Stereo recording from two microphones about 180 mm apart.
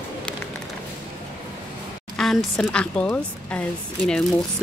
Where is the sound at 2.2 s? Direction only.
Centre (ahead or behind).